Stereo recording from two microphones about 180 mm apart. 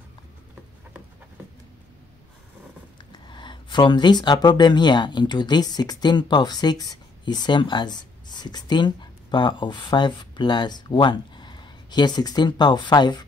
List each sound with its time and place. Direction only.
3.0 s speech: 25° left (ahead or behind)